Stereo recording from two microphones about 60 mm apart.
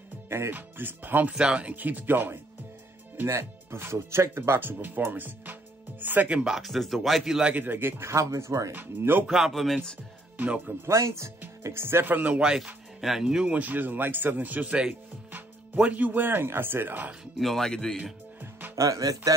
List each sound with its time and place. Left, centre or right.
0.3 s speech: right
1.3 s speech: centre; by 2.3 s right
3.3 s speech: right
6.4 s a man's voice: centre
7.4 s speech: right
8.7 s speech: right
9.2 s speech: centre
9.5 s a man's voice: centre
10.3 s speech: right
10.9 s speech: right
12.4 s speech: centre
13.5 s speech: right
17.4 s speech: centre
18.8 s speech: right